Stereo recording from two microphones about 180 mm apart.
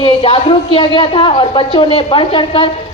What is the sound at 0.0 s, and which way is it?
A woman's voice, 30° left (ahead or behind).